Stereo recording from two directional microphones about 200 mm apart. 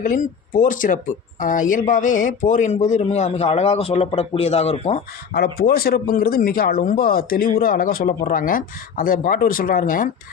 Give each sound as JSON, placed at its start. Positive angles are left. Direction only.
{"t": 0.0, "sound": "a man's voice", "side_deg": 40}
{"t": 5.3, "sound": "speech", "side_deg": 50}